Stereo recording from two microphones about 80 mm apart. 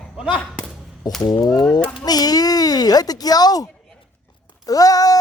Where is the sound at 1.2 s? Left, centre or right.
Left.